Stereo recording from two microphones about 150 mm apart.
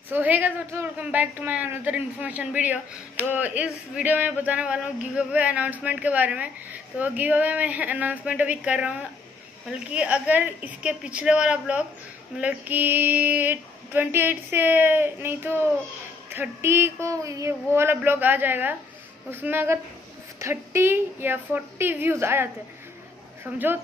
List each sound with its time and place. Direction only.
0.1 s a woman's voice: 10° right (ahead or behind)